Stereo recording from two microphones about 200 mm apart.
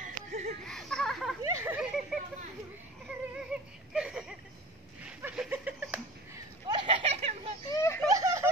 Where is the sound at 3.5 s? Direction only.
5° right (ahead or behind).